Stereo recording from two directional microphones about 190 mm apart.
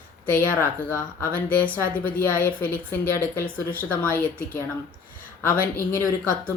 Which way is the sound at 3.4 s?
45° left (ahead or behind).